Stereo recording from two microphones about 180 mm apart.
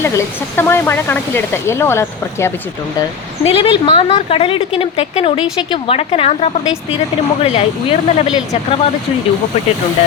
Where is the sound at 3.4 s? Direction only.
30° left (ahead or behind).